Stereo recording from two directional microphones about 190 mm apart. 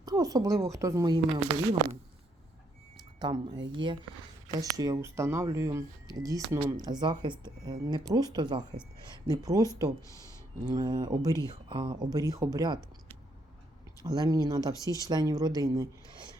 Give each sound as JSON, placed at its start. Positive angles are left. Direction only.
{"t": 0.0, "sound": "speech", "side_deg": -20}
{"t": 3.2, "sound": "speech", "side_deg": -20}
{"t": 10.1, "sound": "speech", "side_deg": 15}
{"t": 10.7, "sound": "speech", "side_deg": -20}
{"t": 14.0, "sound": "speech", "side_deg": -20}
{"t": 14.8, "sound": "speech", "side_deg": 15}
{"t": 15.0, "sound": "speech", "side_deg": -20}